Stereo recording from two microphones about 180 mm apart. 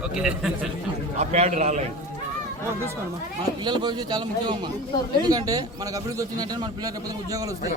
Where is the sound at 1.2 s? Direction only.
40° right (ahead or behind).